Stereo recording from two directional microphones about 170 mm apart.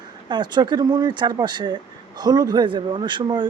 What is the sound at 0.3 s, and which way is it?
Speech, 25° right (ahead or behind).